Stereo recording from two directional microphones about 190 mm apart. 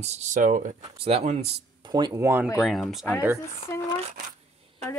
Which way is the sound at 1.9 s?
20° right (ahead or behind).